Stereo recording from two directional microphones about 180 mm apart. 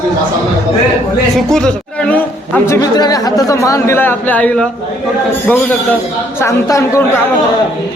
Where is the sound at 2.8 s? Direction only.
20° left (ahead or behind).